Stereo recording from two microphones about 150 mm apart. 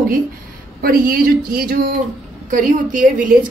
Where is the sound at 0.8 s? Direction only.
75° right (ahead or behind).